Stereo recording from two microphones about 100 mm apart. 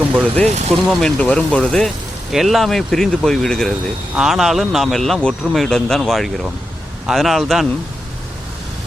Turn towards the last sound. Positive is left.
turn(degrees=0)  # may be behind; listen again after turning